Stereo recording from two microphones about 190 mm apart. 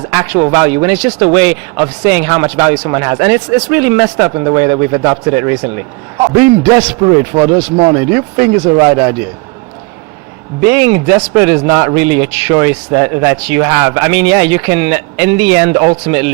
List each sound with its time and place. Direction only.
0.1 s speech: 10° right (ahead or behind)
7.0 s a man's voice: 20° right (ahead or behind)
10.6 s speech: 10° right (ahead or behind)